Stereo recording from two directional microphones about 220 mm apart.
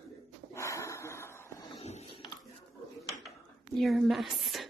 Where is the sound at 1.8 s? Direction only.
30° left (ahead or behind).